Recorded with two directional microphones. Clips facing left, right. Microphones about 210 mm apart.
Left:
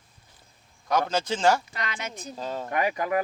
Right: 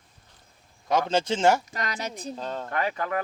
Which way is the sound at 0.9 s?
25° right (ahead or behind).